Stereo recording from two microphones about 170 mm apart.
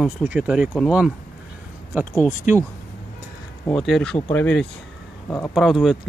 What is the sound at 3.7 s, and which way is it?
Speech, centre (ahead or behind).